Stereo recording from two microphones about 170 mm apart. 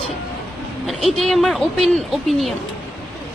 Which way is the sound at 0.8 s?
Centre (ahead or behind).